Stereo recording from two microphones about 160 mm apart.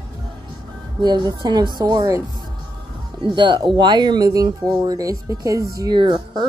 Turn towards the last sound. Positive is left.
turn(degrees=-30)  # may be behind; listen again after turning